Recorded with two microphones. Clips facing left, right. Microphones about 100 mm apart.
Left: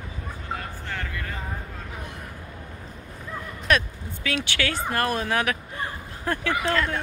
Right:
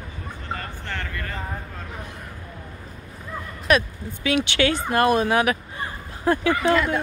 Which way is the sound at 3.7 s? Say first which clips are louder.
Right 3 dB; 5° right (ahead or behind).